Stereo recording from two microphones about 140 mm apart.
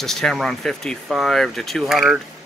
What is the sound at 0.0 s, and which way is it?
Speech, 5° left (ahead or behind).